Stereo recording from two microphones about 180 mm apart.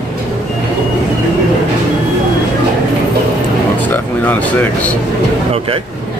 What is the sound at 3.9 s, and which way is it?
Speech, 10° left (ahead or behind).